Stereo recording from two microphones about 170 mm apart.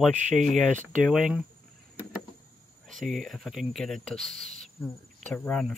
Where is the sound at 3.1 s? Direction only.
Centre (ahead or behind).